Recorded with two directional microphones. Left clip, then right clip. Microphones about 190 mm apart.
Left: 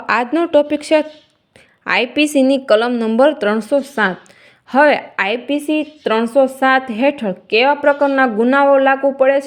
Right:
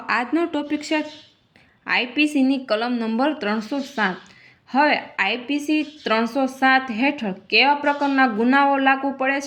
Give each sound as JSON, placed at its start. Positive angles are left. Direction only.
{"t": 0.0, "sound": "a woman's voice", "side_deg": 50}